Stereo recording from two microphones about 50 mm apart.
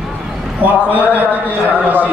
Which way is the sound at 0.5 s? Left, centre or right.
Right.